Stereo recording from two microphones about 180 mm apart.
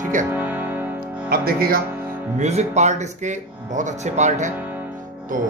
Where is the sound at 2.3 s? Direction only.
40° right (ahead or behind).